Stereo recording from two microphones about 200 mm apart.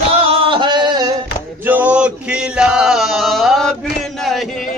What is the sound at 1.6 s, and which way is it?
Male singing, 10° right (ahead or behind).